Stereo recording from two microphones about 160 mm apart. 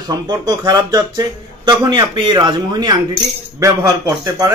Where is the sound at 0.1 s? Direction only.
25° right (ahead or behind).